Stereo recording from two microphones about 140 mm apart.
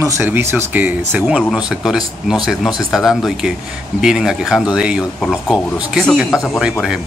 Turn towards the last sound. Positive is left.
turn(degrees=0)  # may be behind; listen again after turning